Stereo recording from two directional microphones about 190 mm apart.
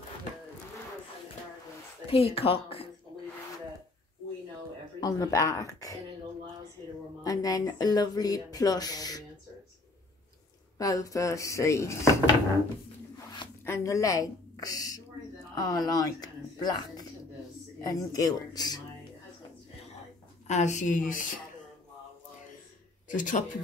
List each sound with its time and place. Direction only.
2.0 s speech: 30° left (ahead or behind)
5.0 s speech: 20° left (ahead or behind)
7.2 s speech: 20° left (ahead or behind)
10.8 s speech: 20° left (ahead or behind)
13.7 s a woman's voice: 15° left (ahead or behind)
20.4 s a woman's voice: 40° left (ahead or behind)
23.0 s a man's voice: 45° left (ahead or behind)